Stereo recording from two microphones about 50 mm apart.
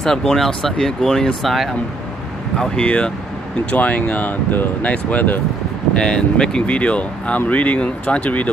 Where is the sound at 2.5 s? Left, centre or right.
Centre.